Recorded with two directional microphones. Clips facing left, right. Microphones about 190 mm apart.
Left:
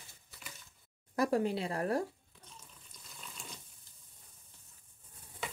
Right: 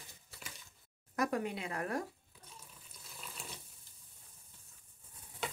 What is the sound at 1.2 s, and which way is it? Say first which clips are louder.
Speech: left 5 dB; 30° left (ahead or behind).